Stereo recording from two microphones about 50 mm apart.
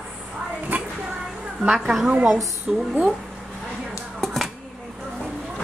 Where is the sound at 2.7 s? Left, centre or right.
Centre.